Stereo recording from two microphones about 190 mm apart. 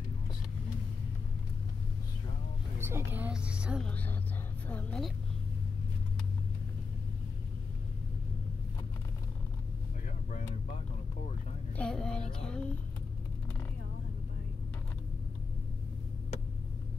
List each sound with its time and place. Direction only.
2.8 s a woman's voice: 10° right (ahead or behind)
4.6 s a woman's voice: 10° left (ahead or behind)
11.7 s child singing: 5° left (ahead or behind)